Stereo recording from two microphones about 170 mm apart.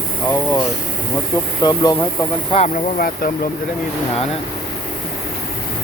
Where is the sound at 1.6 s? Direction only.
25° left (ahead or behind).